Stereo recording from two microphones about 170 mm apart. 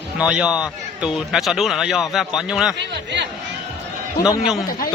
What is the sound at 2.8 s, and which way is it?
Speech, 90° right.